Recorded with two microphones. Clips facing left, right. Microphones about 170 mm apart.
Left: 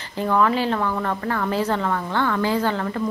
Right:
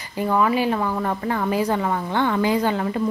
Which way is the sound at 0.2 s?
10° right (ahead or behind).